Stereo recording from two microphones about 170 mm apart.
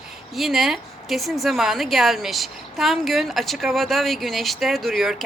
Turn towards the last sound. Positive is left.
turn(degrees=0)  # may be behind; listen again after turning